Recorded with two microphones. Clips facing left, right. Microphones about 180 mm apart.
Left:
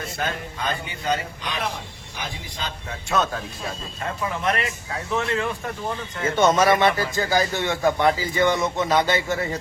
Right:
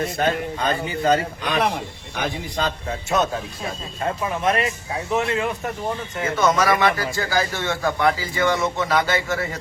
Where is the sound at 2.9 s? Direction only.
20° right (ahead or behind).